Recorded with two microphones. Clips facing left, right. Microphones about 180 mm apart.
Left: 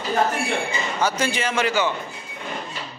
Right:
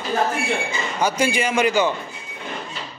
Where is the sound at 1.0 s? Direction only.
10° right (ahead or behind).